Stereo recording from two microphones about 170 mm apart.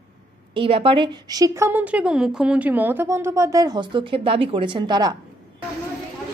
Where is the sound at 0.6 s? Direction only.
30° right (ahead or behind).